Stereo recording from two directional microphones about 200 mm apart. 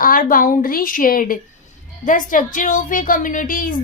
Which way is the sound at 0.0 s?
45° left (ahead or behind).